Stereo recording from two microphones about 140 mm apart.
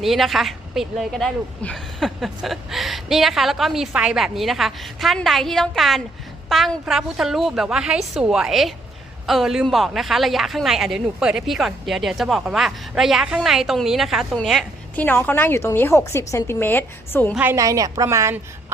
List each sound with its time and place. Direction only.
0.0 s a woman's voice: centre (ahead or behind)
15.0 s a woman's voice: 15° left (ahead or behind)
17.5 s a woman's voice: 25° right (ahead or behind)